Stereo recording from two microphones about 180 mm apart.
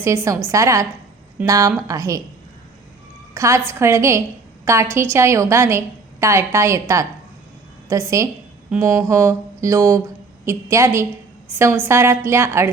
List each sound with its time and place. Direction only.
0.0 s a woman's voice: 15° right (ahead or behind)
3.3 s a woman's voice: 15° right (ahead or behind)